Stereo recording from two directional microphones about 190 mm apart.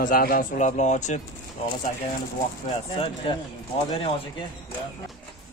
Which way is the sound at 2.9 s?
25° left (ahead or behind).